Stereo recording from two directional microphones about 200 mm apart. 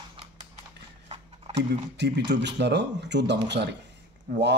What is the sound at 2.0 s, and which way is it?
Speech, 60° right (ahead or behind).